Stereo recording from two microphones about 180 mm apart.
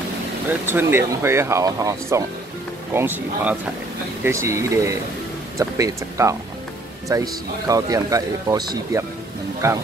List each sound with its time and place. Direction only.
0.5 s speech: 10° right (ahead or behind)